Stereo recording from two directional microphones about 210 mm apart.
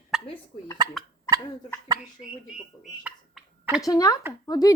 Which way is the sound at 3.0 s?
5° right (ahead or behind).